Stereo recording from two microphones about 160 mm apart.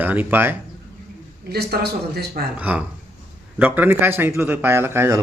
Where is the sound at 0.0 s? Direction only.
10° right (ahead or behind).